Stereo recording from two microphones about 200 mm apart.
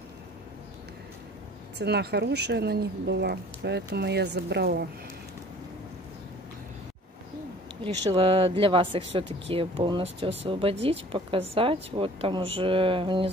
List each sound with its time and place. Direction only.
1.8 s speech: 55° right (ahead or behind)
7.8 s speech: 25° right (ahead or behind)